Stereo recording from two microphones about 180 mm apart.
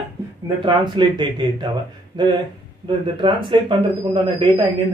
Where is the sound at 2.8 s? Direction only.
25° right (ahead or behind).